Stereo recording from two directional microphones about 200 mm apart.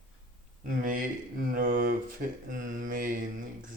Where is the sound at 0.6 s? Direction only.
45° right (ahead or behind).